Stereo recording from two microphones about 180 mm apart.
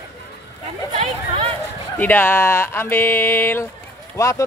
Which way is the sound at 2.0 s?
10° left (ahead or behind).